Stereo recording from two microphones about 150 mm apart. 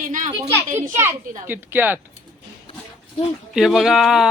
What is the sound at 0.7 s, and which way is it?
A woman's voice, 15° right (ahead or behind).